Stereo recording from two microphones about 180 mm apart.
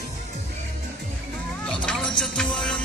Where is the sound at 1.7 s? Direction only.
5° left (ahead or behind).